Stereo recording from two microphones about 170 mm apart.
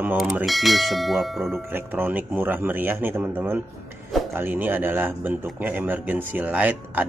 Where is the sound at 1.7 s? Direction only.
10° right (ahead or behind).